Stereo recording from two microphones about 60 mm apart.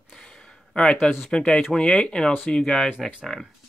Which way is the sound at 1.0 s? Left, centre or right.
Left.